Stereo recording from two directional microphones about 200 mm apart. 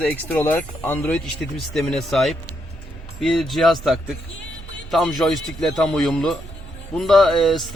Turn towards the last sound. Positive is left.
turn(degrees=0)  # may be behind; listen again after turning